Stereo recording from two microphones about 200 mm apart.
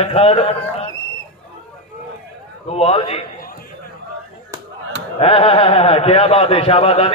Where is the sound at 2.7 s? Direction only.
30° left (ahead or behind).